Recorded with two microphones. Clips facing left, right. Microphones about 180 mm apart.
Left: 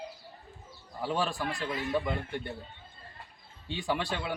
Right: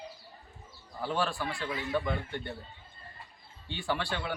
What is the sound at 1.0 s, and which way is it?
A man's voice, 15° left (ahead or behind).